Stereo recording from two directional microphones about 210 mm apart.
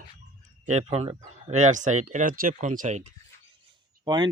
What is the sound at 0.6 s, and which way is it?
Speech, 30° right (ahead or behind).